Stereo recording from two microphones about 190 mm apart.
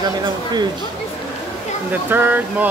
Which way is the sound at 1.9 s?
10° right (ahead or behind).